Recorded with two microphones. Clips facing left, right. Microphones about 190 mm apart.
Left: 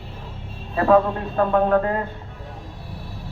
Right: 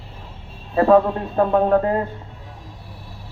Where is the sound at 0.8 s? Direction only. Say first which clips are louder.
Right 2 dB; 20° right (ahead or behind).